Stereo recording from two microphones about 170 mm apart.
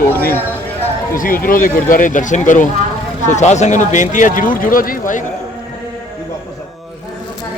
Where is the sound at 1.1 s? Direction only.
55° left (ahead or behind).